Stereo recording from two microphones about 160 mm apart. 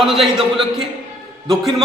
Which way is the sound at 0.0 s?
Centre (ahead or behind).